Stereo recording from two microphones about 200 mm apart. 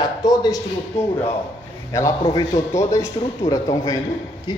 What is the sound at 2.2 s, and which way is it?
A man's voice, 20° left (ahead or behind).